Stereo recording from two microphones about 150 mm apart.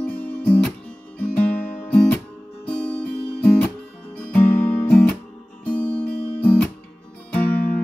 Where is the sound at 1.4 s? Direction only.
10° left (ahead or behind).